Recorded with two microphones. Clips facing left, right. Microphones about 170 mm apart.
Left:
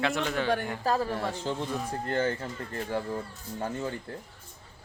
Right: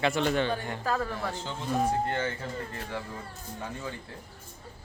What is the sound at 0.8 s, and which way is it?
Speech, 30° left (ahead or behind).